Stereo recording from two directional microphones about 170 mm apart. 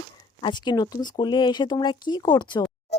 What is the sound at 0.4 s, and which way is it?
A child's voice, 25° left (ahead or behind).